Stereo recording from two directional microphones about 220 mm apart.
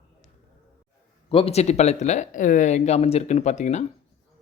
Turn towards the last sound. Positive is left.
turn(degrees=30)  # may be behind; listen again after turning